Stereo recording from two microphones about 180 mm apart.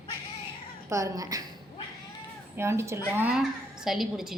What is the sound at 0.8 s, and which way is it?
Speech, 20° right (ahead or behind).